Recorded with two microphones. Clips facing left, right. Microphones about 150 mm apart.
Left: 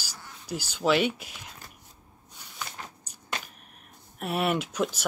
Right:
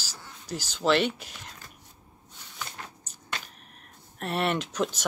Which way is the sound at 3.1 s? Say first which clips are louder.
Even; 10° left (ahead or behind).